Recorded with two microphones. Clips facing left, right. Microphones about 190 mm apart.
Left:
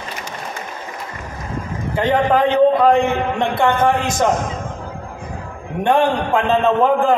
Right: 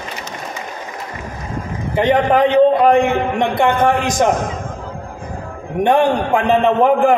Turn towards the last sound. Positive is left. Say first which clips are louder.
# right 2 dB
turn(degrees=-15)  # may be behind; listen again after turning